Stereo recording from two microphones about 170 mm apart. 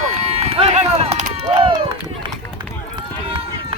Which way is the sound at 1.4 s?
30° right (ahead or behind).